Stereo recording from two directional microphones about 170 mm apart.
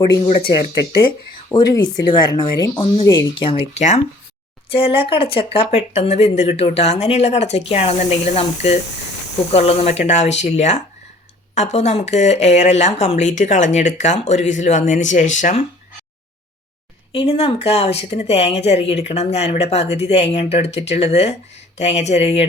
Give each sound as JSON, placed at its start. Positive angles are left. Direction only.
{"t": 1.5, "sound": "speech", "side_deg": 25}
{"t": 17.2, "sound": "speech", "side_deg": 35}